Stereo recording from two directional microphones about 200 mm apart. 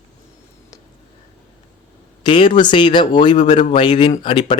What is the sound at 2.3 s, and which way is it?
Speech, 25° left (ahead or behind).